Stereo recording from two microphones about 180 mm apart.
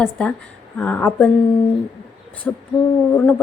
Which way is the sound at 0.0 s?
5° left (ahead or behind).